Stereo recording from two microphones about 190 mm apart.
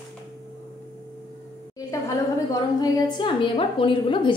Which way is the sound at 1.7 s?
15° left (ahead or behind).